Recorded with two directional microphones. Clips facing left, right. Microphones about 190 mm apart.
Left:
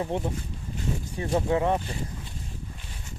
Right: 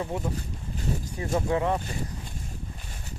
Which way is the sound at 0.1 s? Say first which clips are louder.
Left 2 dB; 30° left (ahead or behind).